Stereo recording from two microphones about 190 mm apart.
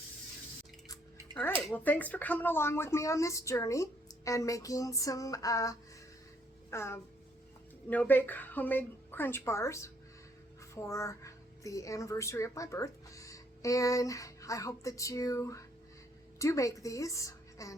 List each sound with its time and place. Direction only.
1.7 s a woman's voice: 10° left (ahead or behind)